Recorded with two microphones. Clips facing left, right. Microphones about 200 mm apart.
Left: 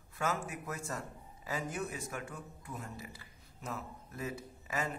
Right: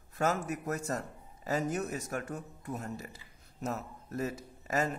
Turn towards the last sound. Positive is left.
turn(degrees=-40)  # may be behind; listen again after turning